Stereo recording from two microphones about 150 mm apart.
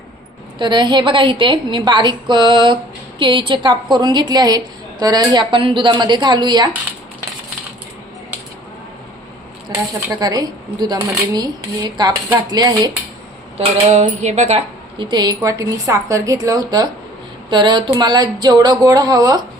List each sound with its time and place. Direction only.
0.6 s a woman's voice: 30° right (ahead or behind)
9.6 s a woman's voice: 25° right (ahead or behind)
13.6 s a woman's voice: 50° right (ahead or behind); by 19.4 s 25° right (ahead or behind)